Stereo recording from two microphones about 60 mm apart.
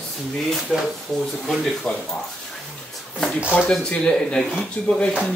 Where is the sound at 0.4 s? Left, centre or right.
Centre.